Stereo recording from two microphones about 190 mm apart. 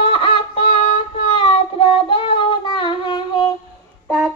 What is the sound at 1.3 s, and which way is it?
Singing, 30° left (ahead or behind).